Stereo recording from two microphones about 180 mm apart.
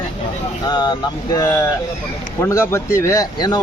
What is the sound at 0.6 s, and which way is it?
Speech, 25° left (ahead or behind).